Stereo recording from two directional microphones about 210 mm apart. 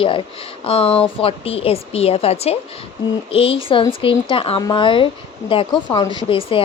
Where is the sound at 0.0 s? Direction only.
25° left (ahead or behind).